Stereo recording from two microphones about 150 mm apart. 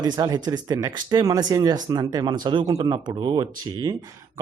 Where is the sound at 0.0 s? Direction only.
25° right (ahead or behind).